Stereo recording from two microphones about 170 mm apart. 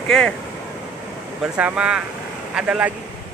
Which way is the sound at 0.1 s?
5° left (ahead or behind).